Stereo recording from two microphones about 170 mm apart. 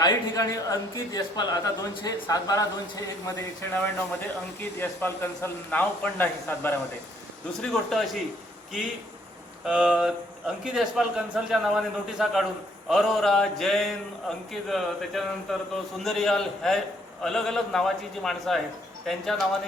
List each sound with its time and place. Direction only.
0.0 s a man's voice: 20° left (ahead or behind); by 8.2 s centre (ahead or behind)
9.6 s a man's voice: 5° right (ahead or behind)